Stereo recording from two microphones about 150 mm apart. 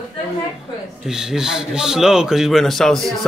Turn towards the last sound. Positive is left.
turn(degrees=0)  # may be behind; listen again after turning